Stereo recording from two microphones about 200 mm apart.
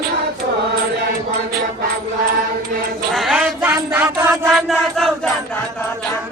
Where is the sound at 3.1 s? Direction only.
Centre (ahead or behind).